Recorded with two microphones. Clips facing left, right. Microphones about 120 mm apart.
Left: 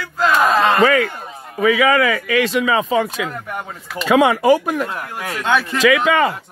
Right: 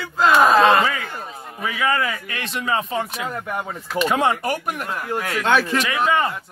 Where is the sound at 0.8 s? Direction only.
70° left (ahead or behind).